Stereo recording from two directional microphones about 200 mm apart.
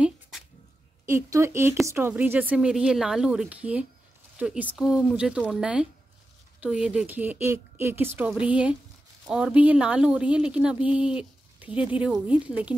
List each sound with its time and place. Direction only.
1.0 s a woman's voice: 15° right (ahead or behind)